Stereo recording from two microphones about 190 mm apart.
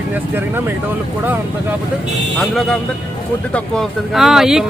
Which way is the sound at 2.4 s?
Centre (ahead or behind).